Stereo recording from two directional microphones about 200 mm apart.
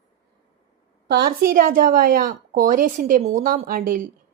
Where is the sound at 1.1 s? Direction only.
50° right (ahead or behind).